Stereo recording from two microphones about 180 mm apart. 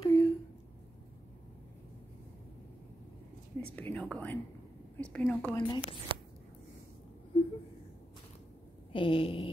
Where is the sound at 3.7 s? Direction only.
10° left (ahead or behind).